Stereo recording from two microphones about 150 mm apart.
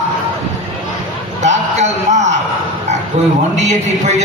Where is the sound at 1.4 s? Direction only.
50° right (ahead or behind).